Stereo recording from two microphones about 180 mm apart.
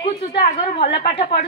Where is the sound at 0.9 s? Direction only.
30° left (ahead or behind).